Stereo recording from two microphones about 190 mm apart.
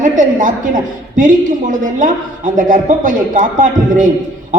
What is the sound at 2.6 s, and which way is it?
A woman's voice, 45° right (ahead or behind).